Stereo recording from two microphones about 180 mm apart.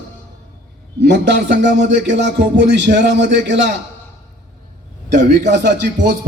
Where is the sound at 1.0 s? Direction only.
70° right (ahead or behind).